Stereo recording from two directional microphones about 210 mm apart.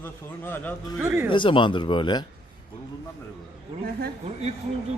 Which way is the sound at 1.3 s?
25° left (ahead or behind).